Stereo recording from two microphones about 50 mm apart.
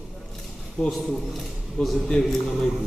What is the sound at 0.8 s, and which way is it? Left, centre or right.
A man's voice, centre.